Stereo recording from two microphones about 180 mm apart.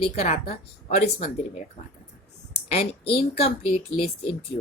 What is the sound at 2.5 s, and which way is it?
Speech, 35° left (ahead or behind).